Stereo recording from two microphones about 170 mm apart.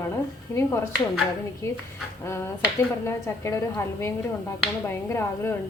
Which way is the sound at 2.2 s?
15° left (ahead or behind).